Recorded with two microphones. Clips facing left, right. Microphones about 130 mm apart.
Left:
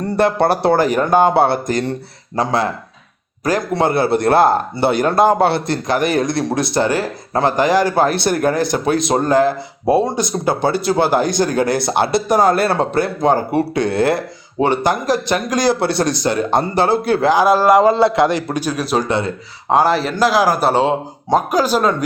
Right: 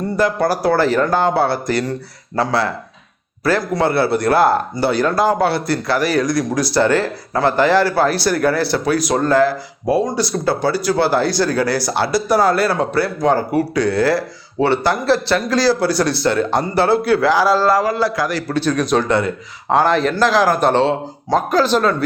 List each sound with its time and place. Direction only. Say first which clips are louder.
0.3 s a man's voice: left 2 dB; 25° left (ahead or behind); by 19.0 s 5° left (ahead or behind)
19.0 s a man's voice: right 2 dB; 20° left (ahead or behind)
19.7 s a man's voice: even; 5° left (ahead or behind)